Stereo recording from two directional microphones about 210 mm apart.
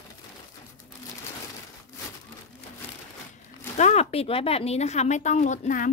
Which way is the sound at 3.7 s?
35° left (ahead or behind).